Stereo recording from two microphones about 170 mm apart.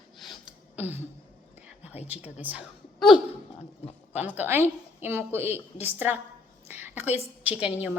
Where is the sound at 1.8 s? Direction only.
40° left (ahead or behind).